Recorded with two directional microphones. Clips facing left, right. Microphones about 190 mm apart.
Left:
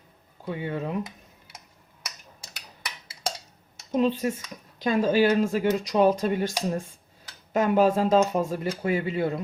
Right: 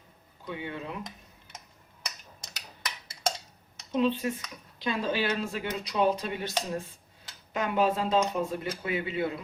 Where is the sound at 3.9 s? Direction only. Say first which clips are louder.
Left 3 dB; 45° left (ahead or behind).